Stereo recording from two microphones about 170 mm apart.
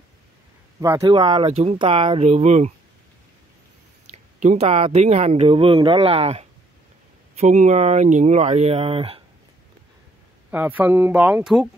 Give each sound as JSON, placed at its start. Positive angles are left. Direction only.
{"t": 0.7, "sound": "speech", "side_deg": -20}
{"t": 1.5, "sound": "speech", "side_deg": -40}
{"t": 4.1, "sound": "speech", "side_deg": -40}
{"t": 10.5, "sound": "speech", "side_deg": -10}